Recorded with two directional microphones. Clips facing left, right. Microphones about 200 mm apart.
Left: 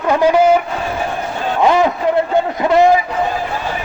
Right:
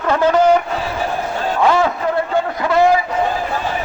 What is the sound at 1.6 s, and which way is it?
Speech, 20° left (ahead or behind).